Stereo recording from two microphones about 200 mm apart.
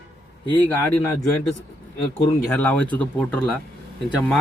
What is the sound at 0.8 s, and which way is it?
Speech, 15° left (ahead or behind).